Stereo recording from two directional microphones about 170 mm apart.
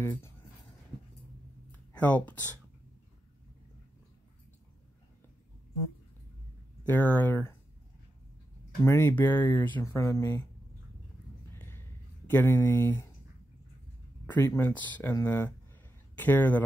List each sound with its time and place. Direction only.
0.0 s speech: 15° left (ahead or behind)
1.7 s a sound: 10° left (ahead or behind)
6.9 s speech: 10° left (ahead or behind)
8.8 s speech: 15° left (ahead or behind)
11.5 s a sound: 15° left (ahead or behind)
12.3 s speech: 10° left (ahead or behind)
14.2 s speech: 15° left (ahead or behind)